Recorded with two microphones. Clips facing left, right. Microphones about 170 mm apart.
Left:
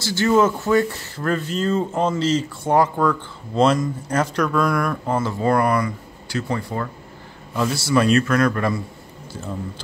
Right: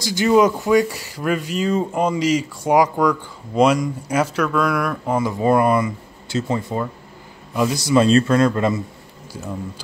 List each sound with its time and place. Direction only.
0.0 s a man's voice: 15° right (ahead or behind)